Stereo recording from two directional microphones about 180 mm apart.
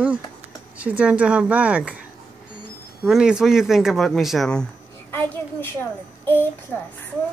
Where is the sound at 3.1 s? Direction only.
5° right (ahead or behind).